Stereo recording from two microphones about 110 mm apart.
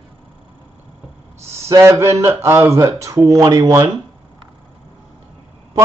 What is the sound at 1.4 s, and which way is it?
Speech, 25° right (ahead or behind).